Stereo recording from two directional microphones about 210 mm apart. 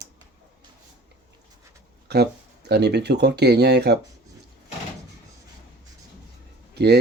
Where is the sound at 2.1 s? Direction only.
50° right (ahead or behind).